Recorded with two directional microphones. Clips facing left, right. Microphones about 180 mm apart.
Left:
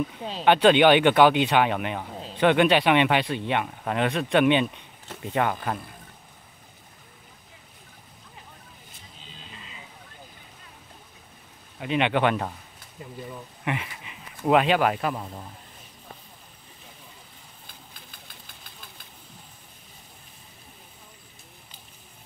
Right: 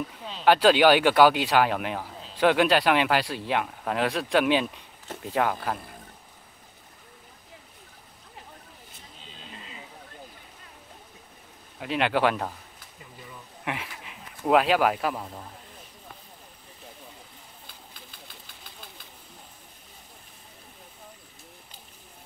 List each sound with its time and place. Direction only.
0.5 s speech: 5° right (ahead or behind)
11.8 s speech: centre (ahead or behind)
13.7 s speech: centre (ahead or behind)
17.6 s engine: 50° left (ahead or behind)